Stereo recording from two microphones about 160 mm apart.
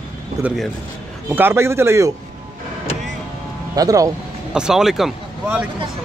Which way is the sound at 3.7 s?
20° right (ahead or behind).